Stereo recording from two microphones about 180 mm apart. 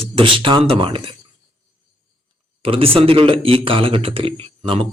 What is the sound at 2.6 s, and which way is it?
A man's voice, 30° right (ahead or behind).